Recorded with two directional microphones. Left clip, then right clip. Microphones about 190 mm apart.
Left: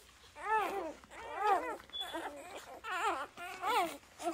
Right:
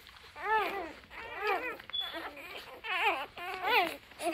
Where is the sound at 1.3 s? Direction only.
25° left (ahead or behind).